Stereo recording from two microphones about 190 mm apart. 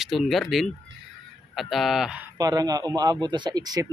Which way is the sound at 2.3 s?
20° right (ahead or behind).